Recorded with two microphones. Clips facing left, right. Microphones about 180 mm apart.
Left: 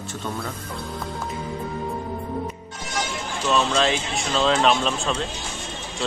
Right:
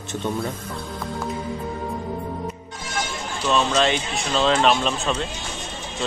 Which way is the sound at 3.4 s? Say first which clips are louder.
Right 1 dB; 5° right (ahead or behind).